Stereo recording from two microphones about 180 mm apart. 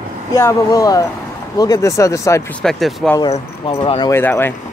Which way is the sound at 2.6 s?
Centre (ahead or behind).